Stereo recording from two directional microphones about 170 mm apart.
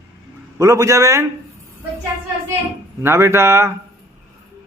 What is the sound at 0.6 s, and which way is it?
Speech, 20° right (ahead or behind).